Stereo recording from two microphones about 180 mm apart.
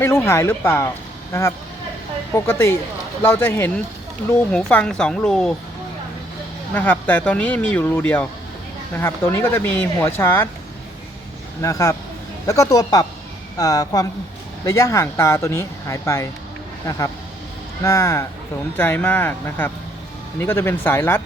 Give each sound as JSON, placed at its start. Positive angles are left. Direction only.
{"t": 0.0, "sound": "speech", "side_deg": 15}
{"t": 6.7, "sound": "speech", "side_deg": 10}
{"t": 11.6, "sound": "speech", "side_deg": 15}
{"t": 17.8, "sound": "speech", "side_deg": 15}